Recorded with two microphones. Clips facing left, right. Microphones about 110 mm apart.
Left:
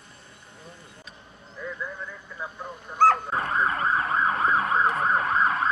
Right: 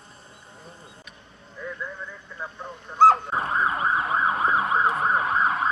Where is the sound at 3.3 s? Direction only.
30° right (ahead or behind).